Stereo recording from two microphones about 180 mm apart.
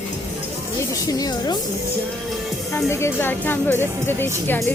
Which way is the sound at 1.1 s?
20° left (ahead or behind).